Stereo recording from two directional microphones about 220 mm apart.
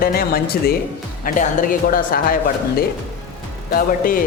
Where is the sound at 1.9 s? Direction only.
40° left (ahead or behind).